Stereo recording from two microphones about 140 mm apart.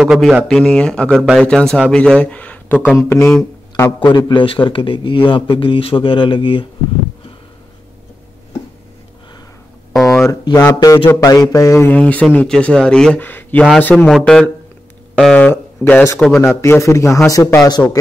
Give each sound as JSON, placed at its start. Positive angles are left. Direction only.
{"t": 0.0, "sound": "speech", "side_deg": 0}
{"t": 2.8, "sound": "speech", "side_deg": -5}
{"t": 3.1, "sound": "speech", "side_deg": 15}
{"t": 4.3, "sound": "speech", "side_deg": 35}
{"t": 10.2, "sound": "a man's voice", "side_deg": 25}
{"t": 11.9, "sound": "speech", "side_deg": 10}
{"t": 14.0, "sound": "a man's voice", "side_deg": 0}
{"t": 17.6, "sound": "speech", "side_deg": 30}